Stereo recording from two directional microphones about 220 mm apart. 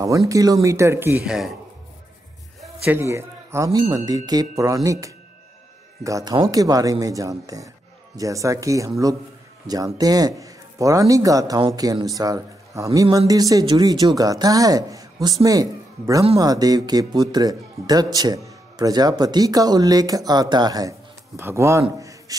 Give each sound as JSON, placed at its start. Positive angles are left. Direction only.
{"t": 0.3, "sound": "speech", "side_deg": -15}
{"t": 2.6, "sound": "speech", "side_deg": -10}
{"t": 21.8, "sound": "a sound", "side_deg": -15}